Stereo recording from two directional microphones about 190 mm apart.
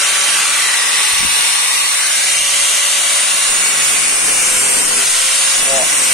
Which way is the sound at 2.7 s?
Centre (ahead or behind).